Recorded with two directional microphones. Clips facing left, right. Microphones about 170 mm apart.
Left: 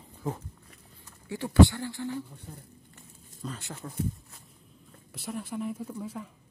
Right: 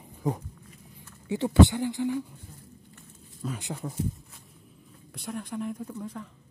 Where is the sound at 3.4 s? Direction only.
15° right (ahead or behind).